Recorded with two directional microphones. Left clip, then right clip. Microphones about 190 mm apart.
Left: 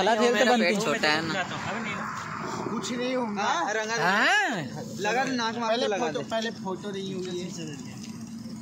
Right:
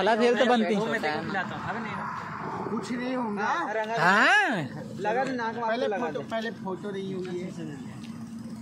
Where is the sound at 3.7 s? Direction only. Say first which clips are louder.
Left 1 dB; 85° left.